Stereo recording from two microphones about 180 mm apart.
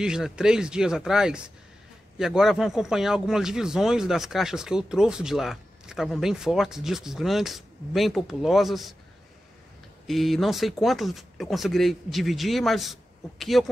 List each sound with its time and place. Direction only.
0.0 s a man's voice: 5° right (ahead or behind)
10.0 s a man's voice: centre (ahead or behind)